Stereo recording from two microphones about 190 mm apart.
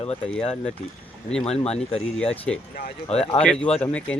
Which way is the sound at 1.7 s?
35° left (ahead or behind).